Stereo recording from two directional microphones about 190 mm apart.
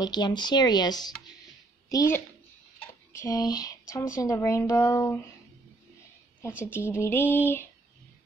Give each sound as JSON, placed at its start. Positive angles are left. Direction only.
{"t": 0.0, "sound": "speech", "side_deg": 20}
{"t": 6.6, "sound": "speech", "side_deg": 10}